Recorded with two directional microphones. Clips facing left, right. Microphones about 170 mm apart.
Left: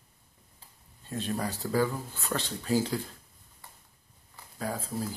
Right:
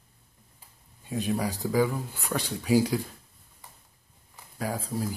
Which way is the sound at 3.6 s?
15° right (ahead or behind).